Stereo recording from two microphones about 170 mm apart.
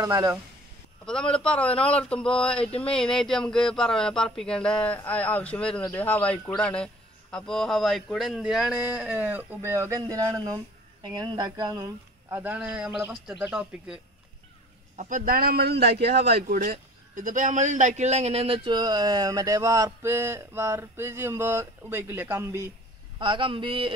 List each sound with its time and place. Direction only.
0.0 s a man's voice: 20° right (ahead or behind)
1.0 s speech: 5° left (ahead or behind)
15.0 s a man's voice: 50° right (ahead or behind); by 16.5 s 75° right (ahead or behind)
16.5 s a man's voice: 50° right (ahead or behind); by 22.7 s 15° right (ahead or behind)
23.1 s a man's voice: 30° right (ahead or behind)